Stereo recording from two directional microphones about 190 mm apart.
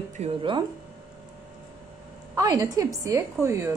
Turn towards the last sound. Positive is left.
turn(degrees=-15)  # may be behind; listen again after turning